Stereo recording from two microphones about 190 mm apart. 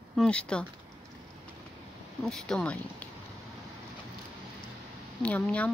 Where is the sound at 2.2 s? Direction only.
5° left (ahead or behind).